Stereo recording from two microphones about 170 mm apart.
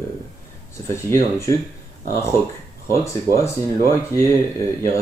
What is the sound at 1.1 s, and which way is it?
Speech, 15° left (ahead or behind).